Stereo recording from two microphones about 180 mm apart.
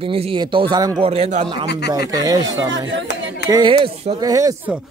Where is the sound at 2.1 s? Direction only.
20° right (ahead or behind).